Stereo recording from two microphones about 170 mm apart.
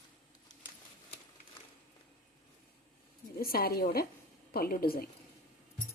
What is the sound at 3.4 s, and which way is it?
A woman's voice, 60° left (ahead or behind).